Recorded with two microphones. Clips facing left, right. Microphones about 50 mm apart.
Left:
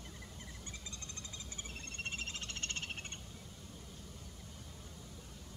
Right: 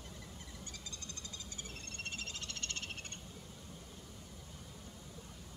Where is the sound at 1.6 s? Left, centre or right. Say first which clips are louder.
Left 2 dB; left.